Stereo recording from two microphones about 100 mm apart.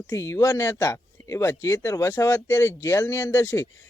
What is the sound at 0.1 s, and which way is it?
Speech, 30° left (ahead or behind).